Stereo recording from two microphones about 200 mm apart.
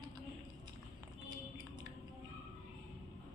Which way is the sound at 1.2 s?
20° right (ahead or behind).